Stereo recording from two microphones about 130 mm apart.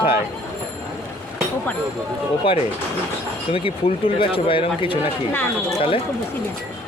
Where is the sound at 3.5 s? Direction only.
45° left (ahead or behind).